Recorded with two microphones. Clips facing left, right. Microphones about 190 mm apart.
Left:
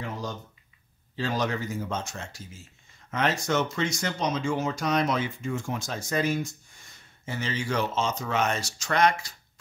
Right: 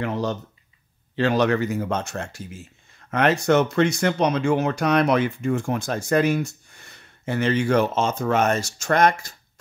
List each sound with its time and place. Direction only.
0.0 s speech: 70° right (ahead or behind); by 9.3 s 50° right (ahead or behind)